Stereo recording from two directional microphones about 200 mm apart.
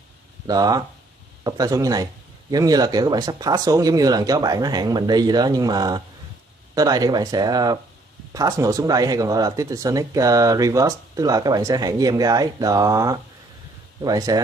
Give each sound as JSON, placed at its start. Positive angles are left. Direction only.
{"t": 0.5, "sound": "speech", "side_deg": -20}